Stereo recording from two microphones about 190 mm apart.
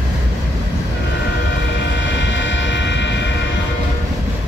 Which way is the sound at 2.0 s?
70° left (ahead or behind).